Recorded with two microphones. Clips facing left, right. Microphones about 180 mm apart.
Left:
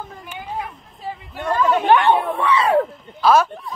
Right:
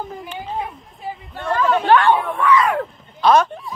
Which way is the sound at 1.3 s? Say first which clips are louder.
Even; 15° left (ahead or behind).